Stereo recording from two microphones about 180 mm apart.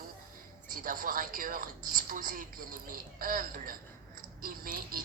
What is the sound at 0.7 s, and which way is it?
Speech, 50° right (ahead or behind).